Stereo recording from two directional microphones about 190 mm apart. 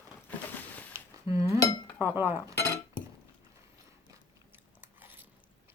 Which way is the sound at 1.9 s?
10° right (ahead or behind).